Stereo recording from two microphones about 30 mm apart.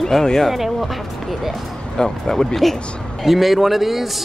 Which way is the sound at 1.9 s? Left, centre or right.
Centre.